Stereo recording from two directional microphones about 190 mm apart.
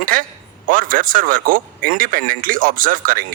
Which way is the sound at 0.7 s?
45° right (ahead or behind).